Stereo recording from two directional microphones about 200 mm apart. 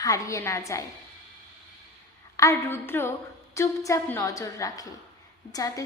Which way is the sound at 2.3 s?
15° left (ahead or behind).